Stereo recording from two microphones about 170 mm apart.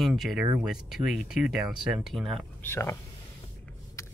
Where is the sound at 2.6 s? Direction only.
15° left (ahead or behind).